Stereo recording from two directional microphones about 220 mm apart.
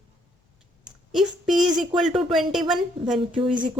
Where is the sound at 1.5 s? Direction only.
Centre (ahead or behind).